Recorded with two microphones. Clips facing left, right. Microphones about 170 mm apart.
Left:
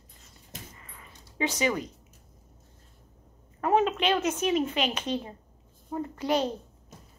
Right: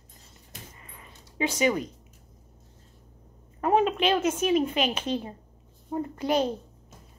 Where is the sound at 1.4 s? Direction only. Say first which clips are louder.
Right 3 dB; 10° right (ahead or behind).